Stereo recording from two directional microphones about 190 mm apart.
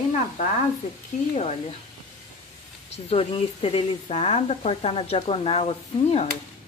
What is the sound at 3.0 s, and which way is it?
Speech, 30° left (ahead or behind).